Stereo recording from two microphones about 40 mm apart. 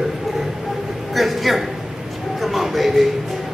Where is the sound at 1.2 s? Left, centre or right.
Centre.